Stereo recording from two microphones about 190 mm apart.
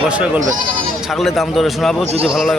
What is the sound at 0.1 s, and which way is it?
A man's voice, 5° right (ahead or behind).